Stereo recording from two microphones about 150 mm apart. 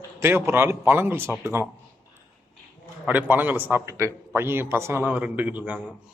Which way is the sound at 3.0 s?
10° right (ahead or behind).